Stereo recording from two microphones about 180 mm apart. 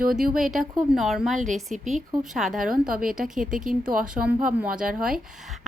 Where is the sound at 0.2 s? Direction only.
Centre (ahead or behind).